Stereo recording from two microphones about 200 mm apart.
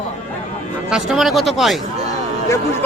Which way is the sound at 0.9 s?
Centre (ahead or behind).